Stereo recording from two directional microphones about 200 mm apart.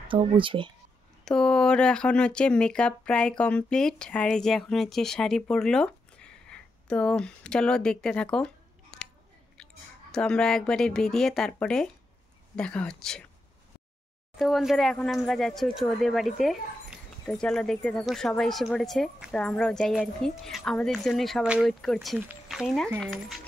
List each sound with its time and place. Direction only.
0.1 s speech: 25° right (ahead or behind)
1.2 s speech: 5° left (ahead or behind)
10.1 s speech: 5° left (ahead or behind)
14.3 s speech: centre (ahead or behind)